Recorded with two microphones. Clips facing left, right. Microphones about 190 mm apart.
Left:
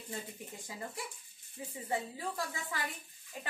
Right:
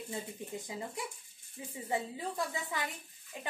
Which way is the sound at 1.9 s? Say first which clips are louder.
Right 1 dB; 20° right (ahead or behind).